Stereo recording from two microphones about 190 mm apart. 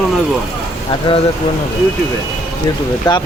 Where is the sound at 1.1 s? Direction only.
30° left (ahead or behind).